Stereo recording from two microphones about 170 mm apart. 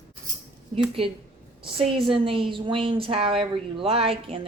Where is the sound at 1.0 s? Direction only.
35° right (ahead or behind).